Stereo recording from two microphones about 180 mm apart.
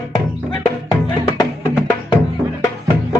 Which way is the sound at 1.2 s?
20° left (ahead or behind).